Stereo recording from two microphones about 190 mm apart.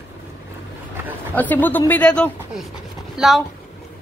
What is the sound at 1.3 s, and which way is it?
A woman's voice, 10° left (ahead or behind).